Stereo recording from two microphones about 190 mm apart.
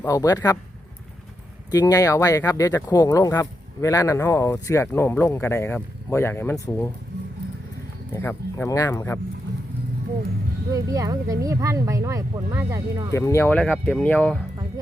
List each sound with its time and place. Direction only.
0.0 s speech: 20° left (ahead or behind)
1.7 s speech: 20° left (ahead or behind)
8.1 s speech: 10° left (ahead or behind)
10.7 s speech: 20° right (ahead or behind)
13.1 s speech: 15° left (ahead or behind)